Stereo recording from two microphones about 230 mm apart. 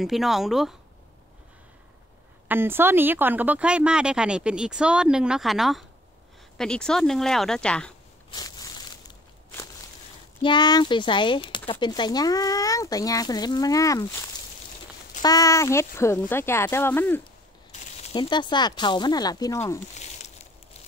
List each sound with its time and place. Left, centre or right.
0.0 s speech: centre
2.4 s speech: centre
8.3 s a sound: centre
10.4 s speech: centre
15.2 s speech: centre
18.0 s speech: centre